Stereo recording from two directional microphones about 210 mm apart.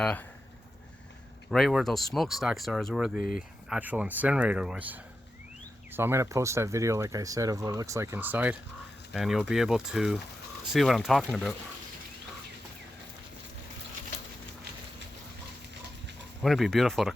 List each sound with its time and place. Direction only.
0.0 s speech: 5° left (ahead or behind)
1.5 s speech: centre (ahead or behind)
3.2 s speech: 40° left (ahead or behind)
3.7 s speech: 5° right (ahead or behind)
16.4 s speech: centre (ahead or behind)